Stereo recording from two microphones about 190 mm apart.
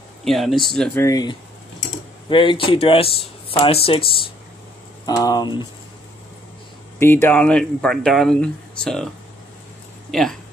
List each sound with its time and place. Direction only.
0.2 s speech: centre (ahead or behind)
0.9 s speech: 15° left (ahead or behind)
7.0 s speech: 10° left (ahead or behind)